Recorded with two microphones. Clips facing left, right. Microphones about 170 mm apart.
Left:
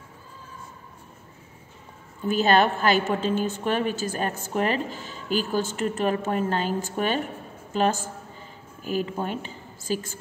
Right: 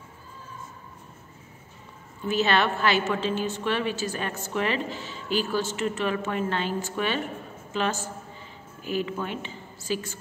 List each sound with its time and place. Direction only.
2.2 s a woman's voice: 45° left (ahead or behind)